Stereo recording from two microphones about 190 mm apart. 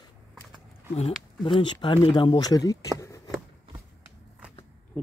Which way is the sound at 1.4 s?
25° left (ahead or behind).